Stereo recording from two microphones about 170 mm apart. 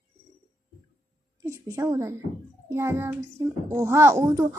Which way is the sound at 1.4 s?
15° right (ahead or behind).